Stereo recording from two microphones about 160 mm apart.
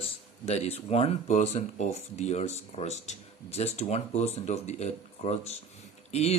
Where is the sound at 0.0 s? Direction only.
40° left (ahead or behind).